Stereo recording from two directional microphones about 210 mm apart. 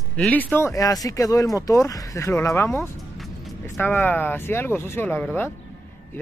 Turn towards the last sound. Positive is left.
turn(degrees=10)  # may be behind; listen again after turning